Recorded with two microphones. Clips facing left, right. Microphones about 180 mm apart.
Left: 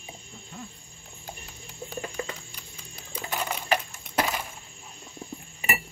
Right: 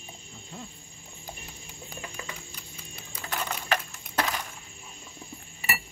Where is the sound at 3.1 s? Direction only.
10° left (ahead or behind).